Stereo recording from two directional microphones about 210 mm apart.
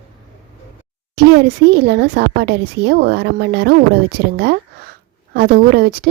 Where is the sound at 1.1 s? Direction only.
50° right (ahead or behind).